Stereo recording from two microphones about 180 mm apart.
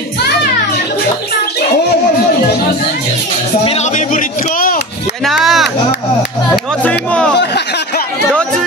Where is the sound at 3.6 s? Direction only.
40° left (ahead or behind).